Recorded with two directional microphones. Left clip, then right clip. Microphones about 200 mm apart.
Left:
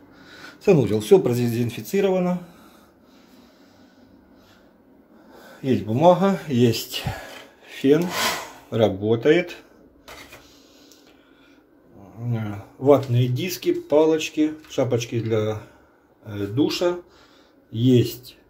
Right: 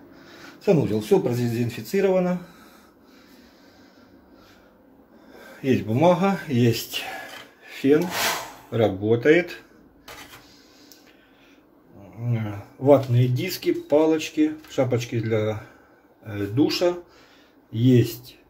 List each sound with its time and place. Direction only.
0.3 s speech: 25° left (ahead or behind)
5.6 s speech: 5° left (ahead or behind)
7.6 s rub: 15° left (ahead or behind)
8.6 s speech: 10° left (ahead or behind)
12.3 s speech: 10° left (ahead or behind)